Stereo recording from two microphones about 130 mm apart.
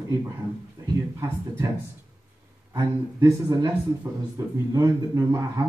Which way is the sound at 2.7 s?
25° right (ahead or behind).